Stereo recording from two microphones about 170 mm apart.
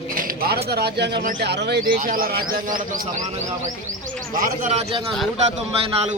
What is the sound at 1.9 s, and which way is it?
Speech, 55° right (ahead or behind).